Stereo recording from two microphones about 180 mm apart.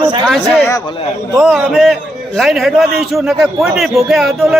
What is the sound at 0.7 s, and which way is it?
Speech, 25° left (ahead or behind).